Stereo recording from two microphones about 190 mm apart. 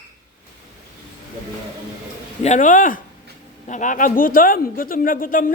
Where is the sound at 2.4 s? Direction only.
40° left (ahead or behind).